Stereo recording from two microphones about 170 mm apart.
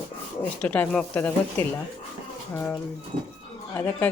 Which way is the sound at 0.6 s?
10° left (ahead or behind).